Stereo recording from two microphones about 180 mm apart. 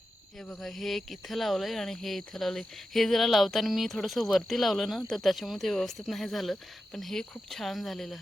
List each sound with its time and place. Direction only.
0.3 s speech: 5° left (ahead or behind)